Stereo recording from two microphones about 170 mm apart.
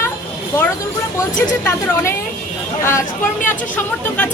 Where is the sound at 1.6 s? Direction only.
15° left (ahead or behind).